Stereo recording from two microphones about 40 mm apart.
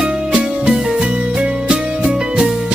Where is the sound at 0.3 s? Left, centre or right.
Right.